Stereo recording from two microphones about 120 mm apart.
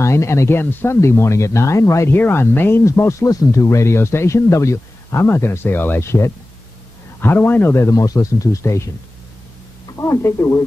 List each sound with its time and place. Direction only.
0.0 s speech: 25° left (ahead or behind)
9.9 s speech: 25° left (ahead or behind)